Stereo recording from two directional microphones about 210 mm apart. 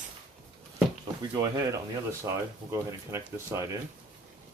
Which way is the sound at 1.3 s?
15° right (ahead or behind).